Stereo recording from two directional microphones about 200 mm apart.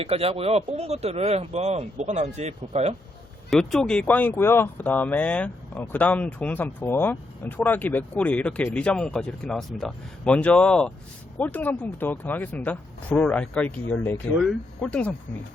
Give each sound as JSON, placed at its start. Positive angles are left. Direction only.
{"t": 0.0, "sound": "speech", "side_deg": -30}
{"t": 3.5, "sound": "speech", "side_deg": 5}